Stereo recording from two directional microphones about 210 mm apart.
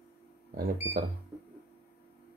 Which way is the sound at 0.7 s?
50° right (ahead or behind).